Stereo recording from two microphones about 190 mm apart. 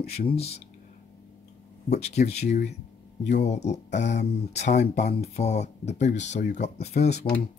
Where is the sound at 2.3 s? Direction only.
35° left (ahead or behind).